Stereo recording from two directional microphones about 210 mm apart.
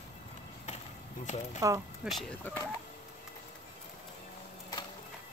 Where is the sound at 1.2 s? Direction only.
35° left (ahead or behind).